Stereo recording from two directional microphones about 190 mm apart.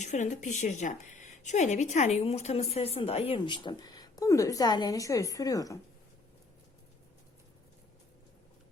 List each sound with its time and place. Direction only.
0.0 s speech: 40° left (ahead or behind); by 5.8 s 15° left (ahead or behind)